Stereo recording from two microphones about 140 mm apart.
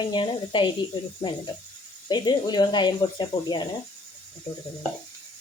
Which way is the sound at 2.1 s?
30° left (ahead or behind).